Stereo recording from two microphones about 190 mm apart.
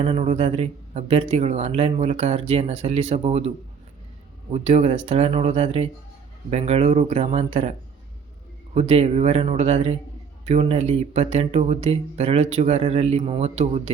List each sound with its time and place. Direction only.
0.0 s speech: 35° right (ahead or behind)
4.5 s speech: 35° right (ahead or behind)